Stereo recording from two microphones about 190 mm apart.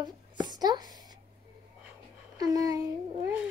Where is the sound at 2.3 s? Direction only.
20° right (ahead or behind).